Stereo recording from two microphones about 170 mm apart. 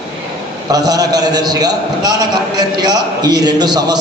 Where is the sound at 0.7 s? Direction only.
20° right (ahead or behind).